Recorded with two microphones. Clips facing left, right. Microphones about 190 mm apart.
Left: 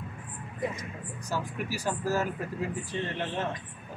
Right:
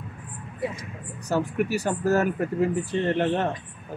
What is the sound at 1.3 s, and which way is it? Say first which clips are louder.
Speech: right 9 dB; 65° right (ahead or behind).